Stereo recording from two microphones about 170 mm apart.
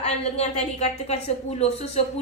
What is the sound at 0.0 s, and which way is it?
A woman's voice, 40° left (ahead or behind).